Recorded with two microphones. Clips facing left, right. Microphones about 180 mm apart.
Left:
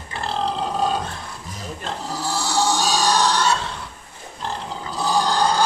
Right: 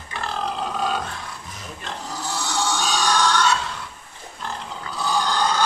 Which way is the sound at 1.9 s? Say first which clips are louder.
Left 3 dB; 30° left (ahead or behind).